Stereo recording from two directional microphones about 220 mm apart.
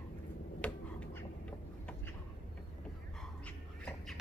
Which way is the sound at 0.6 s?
5° left (ahead or behind).